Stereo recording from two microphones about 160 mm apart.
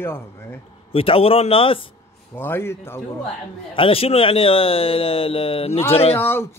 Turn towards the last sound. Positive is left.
turn(degrees=35)  # may be behind; listen again after turning